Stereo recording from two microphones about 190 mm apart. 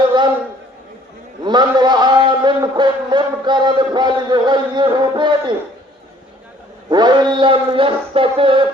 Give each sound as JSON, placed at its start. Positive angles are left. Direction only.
{"t": 1.5, "sound": "a man's voice", "side_deg": -20}
{"t": 6.9, "sound": "speech", "side_deg": -20}